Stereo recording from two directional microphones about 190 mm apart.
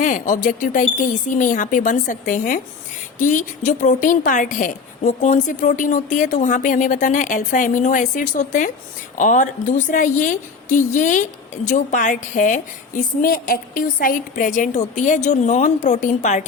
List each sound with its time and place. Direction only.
0.0 s a woman's voice: 45° left (ahead or behind)